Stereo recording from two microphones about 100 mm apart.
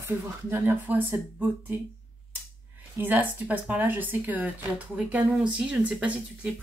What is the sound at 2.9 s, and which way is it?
Speech, 20° right (ahead or behind).